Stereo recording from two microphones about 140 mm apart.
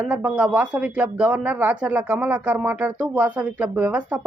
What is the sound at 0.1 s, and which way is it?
Speech, 10° right (ahead or behind).